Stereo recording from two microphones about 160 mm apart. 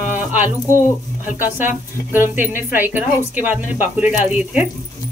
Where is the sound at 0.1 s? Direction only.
10° right (ahead or behind).